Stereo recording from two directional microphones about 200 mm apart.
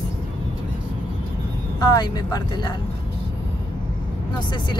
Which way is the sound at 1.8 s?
20° left (ahead or behind).